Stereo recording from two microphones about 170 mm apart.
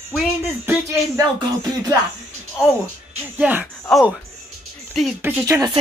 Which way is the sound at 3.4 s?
10° right (ahead or behind).